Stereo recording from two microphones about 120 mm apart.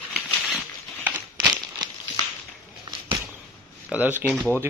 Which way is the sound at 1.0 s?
15° right (ahead or behind).